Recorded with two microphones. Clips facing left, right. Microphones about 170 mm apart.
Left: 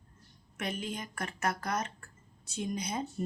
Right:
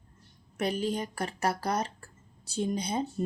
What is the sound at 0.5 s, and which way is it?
Speech, 35° right (ahead or behind).